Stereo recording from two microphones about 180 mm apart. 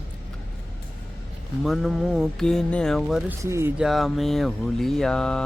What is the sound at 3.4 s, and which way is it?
Speech, 15° right (ahead or behind).